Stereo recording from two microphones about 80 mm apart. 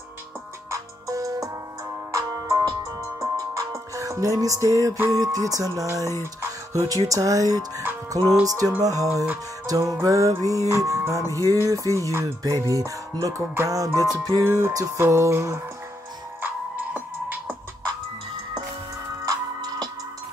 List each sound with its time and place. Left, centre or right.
0.7 s music: right
6.4 s speech: right
8.5 s music: right
14.4 s music: right
14.7 s music: right
16.3 s music: right
19.2 s music: right